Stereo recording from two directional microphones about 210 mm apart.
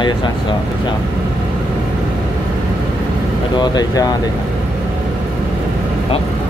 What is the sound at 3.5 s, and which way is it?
Speech, 20° left (ahead or behind).